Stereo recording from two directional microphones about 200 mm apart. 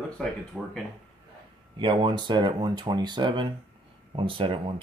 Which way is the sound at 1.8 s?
25° right (ahead or behind).